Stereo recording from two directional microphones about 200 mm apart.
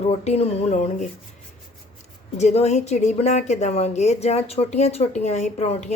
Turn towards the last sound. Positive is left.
turn(degrees=35)  # may be behind; listen again after turning